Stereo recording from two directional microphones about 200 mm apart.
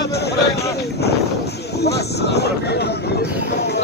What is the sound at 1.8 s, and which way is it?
Speech, 55° left (ahead or behind).